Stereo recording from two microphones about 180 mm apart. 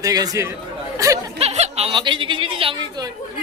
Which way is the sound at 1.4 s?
35° right (ahead or behind).